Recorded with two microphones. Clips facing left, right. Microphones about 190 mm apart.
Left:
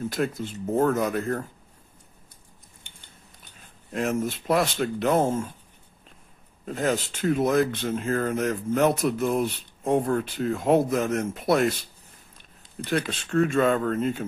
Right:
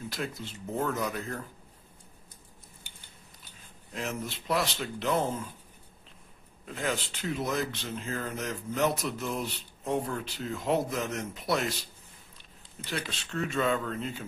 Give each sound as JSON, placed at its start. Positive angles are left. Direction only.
{"t": 0.1, "sound": "speech", "side_deg": 50}
{"t": 3.9, "sound": "speech", "side_deg": 50}
{"t": 6.6, "sound": "speech", "side_deg": 45}
{"t": 12.8, "sound": "speech", "side_deg": 55}